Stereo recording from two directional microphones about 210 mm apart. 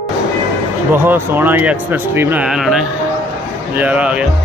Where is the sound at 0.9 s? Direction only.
10° right (ahead or behind).